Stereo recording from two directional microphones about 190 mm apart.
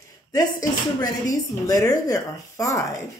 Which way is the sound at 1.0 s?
15° left (ahead or behind).